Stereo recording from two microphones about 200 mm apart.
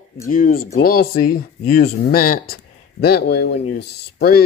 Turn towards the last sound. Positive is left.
turn(degrees=50)  # may be behind; listen again after turning